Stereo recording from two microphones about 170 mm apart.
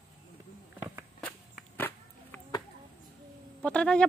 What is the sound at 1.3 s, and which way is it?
Whip, 10° left (ahead or behind).